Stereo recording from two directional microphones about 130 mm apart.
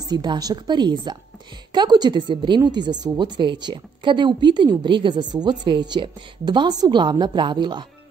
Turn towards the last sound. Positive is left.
turn(degrees=-35)  # may be behind; listen again after turning